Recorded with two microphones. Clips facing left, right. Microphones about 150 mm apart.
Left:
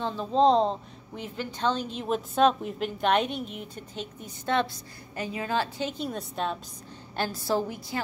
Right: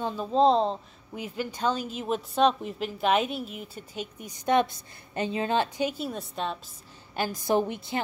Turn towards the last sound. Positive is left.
turn(degrees=-20)  # may be behind; listen again after turning